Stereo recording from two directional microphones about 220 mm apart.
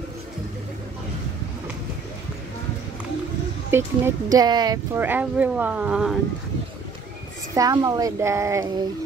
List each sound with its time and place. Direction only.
3.7 s speech: 15° right (ahead or behind)
7.5 s speech: 15° right (ahead or behind)